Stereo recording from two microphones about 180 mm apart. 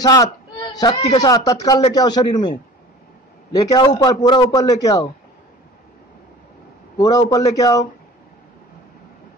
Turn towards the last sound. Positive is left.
turn(degrees=20)  # may be behind; listen again after turning